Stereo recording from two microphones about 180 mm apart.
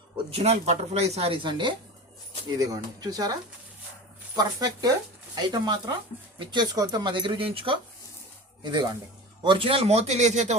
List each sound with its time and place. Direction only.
0.3 s speech: 35° right (ahead or behind)
4.4 s speech: 20° right (ahead or behind); by 10.5 s 40° right (ahead or behind)